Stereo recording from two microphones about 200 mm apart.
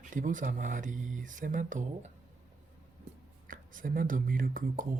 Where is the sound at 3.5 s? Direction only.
45° right (ahead or behind).